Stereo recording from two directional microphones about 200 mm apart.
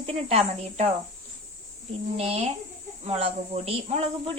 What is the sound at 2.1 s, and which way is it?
A woman's voice, 30° right (ahead or behind).